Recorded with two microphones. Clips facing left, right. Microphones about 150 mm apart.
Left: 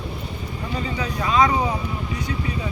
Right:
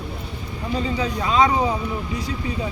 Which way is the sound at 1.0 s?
25° right (ahead or behind).